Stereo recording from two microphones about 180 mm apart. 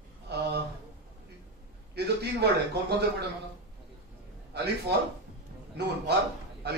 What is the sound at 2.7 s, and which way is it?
Speech, 65° right (ahead or behind).